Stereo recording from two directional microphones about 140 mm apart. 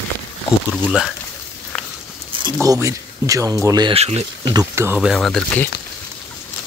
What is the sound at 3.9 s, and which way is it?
Speech, 45° right (ahead or behind).